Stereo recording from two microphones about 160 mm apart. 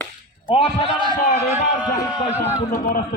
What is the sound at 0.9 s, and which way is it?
Speech, 30° right (ahead or behind).